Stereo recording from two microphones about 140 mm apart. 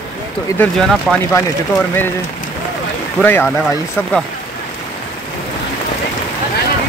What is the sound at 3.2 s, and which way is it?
Speech, 15° left (ahead or behind).